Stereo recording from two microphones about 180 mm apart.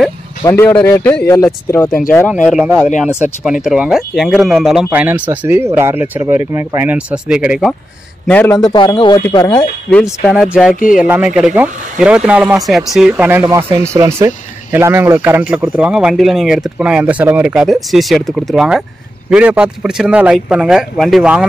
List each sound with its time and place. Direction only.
0.7 s speech: 20° left (ahead or behind)
2.4 s speech: 5° right (ahead or behind)
8.3 s speech: 10° left (ahead or behind)
8.5 s a man's voice: 20° left (ahead or behind)
9.5 s speech: 5° left (ahead or behind)